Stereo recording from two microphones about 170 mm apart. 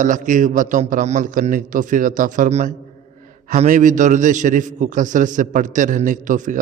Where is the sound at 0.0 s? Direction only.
50° right (ahead or behind).